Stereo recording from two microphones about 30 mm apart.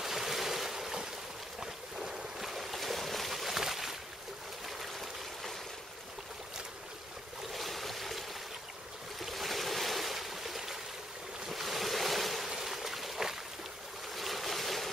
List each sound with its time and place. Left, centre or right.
0.0 s waves: centre
0.7 s a sound: centre
1.6 s boat: centre
2.4 s boat: centre
4.6 s a sound: centre
7.5 s boat: centre
11.6 s waves: centre
12.4 s a sound: centre
14.1 s boat: centre